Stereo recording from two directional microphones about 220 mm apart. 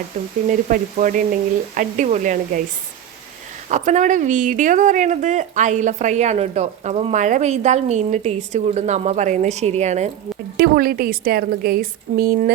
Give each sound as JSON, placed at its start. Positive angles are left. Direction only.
{"t": 0.4, "sound": "a woman's voice", "side_deg": -35}
{"t": 3.7, "sound": "a woman's voice", "side_deg": -35}
{"t": 10.6, "sound": "a woman's voice", "side_deg": -40}